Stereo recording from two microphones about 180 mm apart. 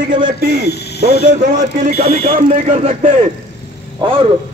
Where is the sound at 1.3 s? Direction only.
45° right (ahead or behind).